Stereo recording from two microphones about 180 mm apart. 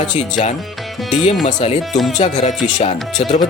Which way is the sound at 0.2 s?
40° left (ahead or behind).